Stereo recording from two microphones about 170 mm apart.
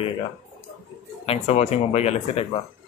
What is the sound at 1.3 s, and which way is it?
Speech, 40° left (ahead or behind).